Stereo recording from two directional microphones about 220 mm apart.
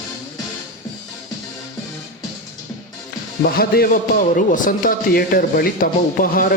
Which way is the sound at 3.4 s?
45° left (ahead or behind).